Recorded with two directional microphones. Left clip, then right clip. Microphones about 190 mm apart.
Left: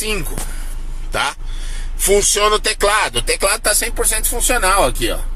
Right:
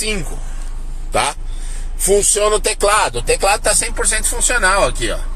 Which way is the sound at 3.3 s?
20° left (ahead or behind).